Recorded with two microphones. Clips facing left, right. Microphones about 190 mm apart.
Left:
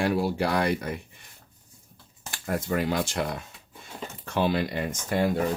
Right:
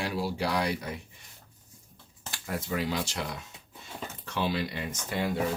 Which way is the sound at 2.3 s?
50° left (ahead or behind).